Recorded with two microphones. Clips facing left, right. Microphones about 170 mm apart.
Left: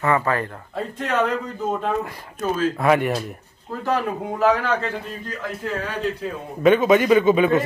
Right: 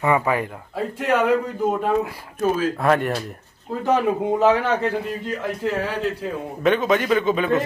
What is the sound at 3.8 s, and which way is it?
Speech, 20° right (ahead or behind).